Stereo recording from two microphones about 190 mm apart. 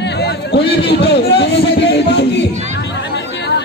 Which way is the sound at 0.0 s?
60° left (ahead or behind).